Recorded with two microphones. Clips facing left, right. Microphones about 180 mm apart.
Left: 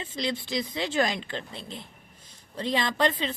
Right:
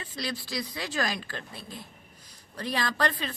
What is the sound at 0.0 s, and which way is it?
Speech, 25° left (ahead or behind).